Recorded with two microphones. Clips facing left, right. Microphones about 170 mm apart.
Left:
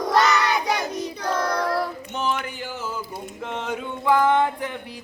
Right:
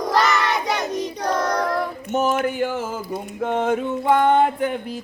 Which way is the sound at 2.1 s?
45° right (ahead or behind).